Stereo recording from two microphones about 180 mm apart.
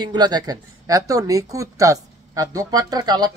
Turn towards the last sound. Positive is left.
turn(degrees=-20)  # may be behind; listen again after turning